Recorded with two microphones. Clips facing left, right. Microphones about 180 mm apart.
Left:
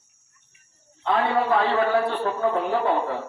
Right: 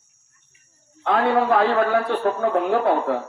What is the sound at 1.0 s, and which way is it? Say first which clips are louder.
A man's voice: right 3 dB; 60° right (ahead or behind).